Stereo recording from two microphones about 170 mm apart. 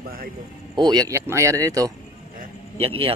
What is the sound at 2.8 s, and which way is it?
Speech, 35° right (ahead or behind).